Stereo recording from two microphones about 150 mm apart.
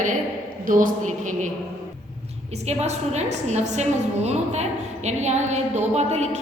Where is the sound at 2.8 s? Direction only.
50° right (ahead or behind).